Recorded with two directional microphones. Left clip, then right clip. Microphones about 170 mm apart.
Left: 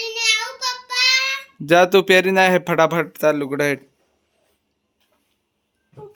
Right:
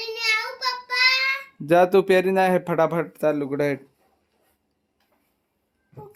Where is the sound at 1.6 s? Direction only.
5° left (ahead or behind).